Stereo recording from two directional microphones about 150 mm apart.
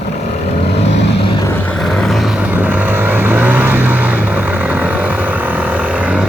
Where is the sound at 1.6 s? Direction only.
5° left (ahead or behind).